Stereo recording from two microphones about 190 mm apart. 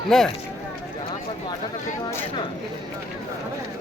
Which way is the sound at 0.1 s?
5° left (ahead or behind).